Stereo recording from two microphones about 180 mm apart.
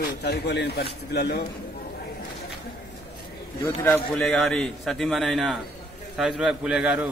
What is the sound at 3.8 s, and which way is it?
A man's voice, 10° left (ahead or behind).